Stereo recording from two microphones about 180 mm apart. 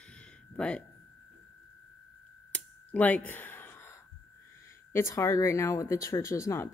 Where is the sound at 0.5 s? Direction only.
5° left (ahead or behind).